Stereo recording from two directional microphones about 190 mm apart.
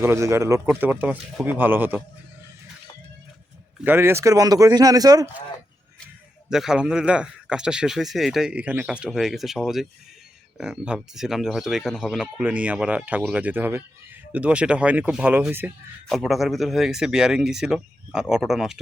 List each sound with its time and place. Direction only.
0.0 s speech: 15° right (ahead or behind)
3.8 s speech: 10° right (ahead or behind)
6.5 s speech: 5° right (ahead or behind)